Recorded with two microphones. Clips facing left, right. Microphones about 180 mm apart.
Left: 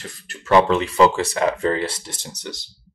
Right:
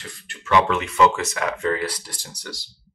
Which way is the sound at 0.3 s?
35° left (ahead or behind).